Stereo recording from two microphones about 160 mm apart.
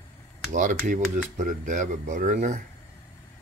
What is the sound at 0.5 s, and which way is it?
Speech, 50° right (ahead or behind).